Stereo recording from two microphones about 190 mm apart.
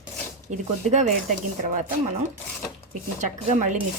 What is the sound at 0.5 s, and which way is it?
Speech, 40° right (ahead or behind).